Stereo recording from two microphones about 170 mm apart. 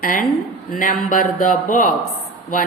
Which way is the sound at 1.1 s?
55° left (ahead or behind).